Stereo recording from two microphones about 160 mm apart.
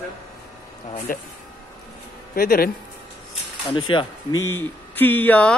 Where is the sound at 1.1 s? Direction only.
60° left (ahead or behind).